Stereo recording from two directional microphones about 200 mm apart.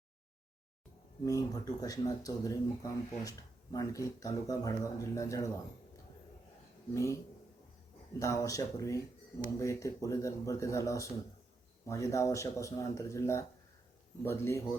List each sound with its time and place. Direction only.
1.2 s speech: 20° left (ahead or behind)
6.9 s speech: 15° left (ahead or behind)
8.2 s speech: 15° left (ahead or behind)